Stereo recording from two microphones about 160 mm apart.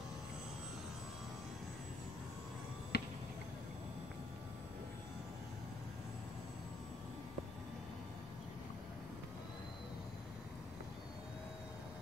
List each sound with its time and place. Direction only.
2.9 s finger snapping: 80° left